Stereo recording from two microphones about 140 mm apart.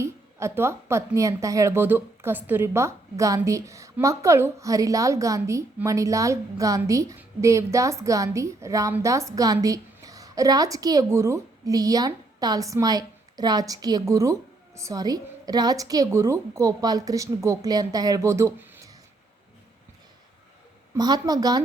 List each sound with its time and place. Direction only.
0.0 s a woman's voice: 20° right (ahead or behind)
20.9 s a woman's voice: 30° right (ahead or behind)